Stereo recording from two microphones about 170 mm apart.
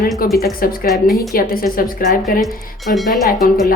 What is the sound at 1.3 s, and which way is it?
A woman's voice, 60° left (ahead or behind).